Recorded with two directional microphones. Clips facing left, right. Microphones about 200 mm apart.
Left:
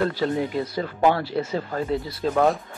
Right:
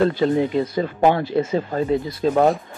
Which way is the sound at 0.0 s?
20° right (ahead or behind).